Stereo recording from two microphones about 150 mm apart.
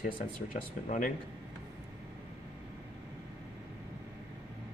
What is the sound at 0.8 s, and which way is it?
Speech, 60° left (ahead or behind).